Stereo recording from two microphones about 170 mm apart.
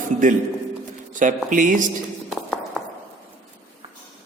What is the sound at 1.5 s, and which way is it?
Speech, 50° right (ahead or behind).